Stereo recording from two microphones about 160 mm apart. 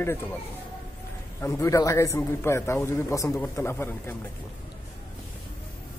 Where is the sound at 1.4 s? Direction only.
20° left (ahead or behind).